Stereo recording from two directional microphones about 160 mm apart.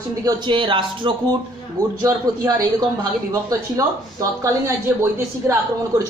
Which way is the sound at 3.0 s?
20° right (ahead or behind).